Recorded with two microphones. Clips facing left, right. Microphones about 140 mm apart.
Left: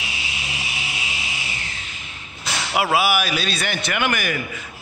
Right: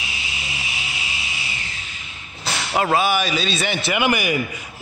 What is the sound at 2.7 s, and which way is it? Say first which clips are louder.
A man's voice: right 1 dB; 10° left (ahead or behind).